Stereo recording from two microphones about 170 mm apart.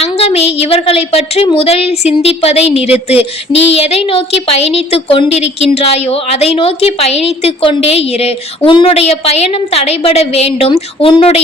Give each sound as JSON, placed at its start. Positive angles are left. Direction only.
{"t": 0.0, "sound": "a woman's voice", "side_deg": 35}